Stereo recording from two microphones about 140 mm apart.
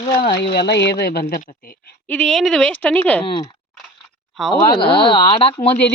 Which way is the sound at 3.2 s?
40° left (ahead or behind).